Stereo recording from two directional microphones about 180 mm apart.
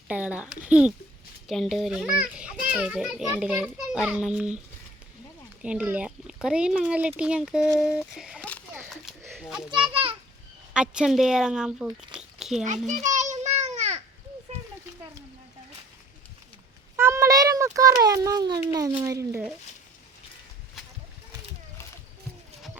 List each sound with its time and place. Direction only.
0.1 s a child's voice: 5° right (ahead or behind)
5.6 s a child's voice: 5° right (ahead or behind)
8.9 s children playing: centre (ahead or behind)
9.9 s children playing: 30° right (ahead or behind)
10.8 s a child's voice: 5° right (ahead or behind)
12.1 s a sound: centre (ahead or behind)
13.1 s baby cry: 40° right (ahead or behind)
17.0 s a sound: 15° right (ahead or behind)
18.7 s speech: 20° right (ahead or behind)